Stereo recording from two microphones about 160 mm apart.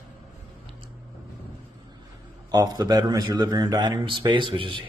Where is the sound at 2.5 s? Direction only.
25° right (ahead or behind).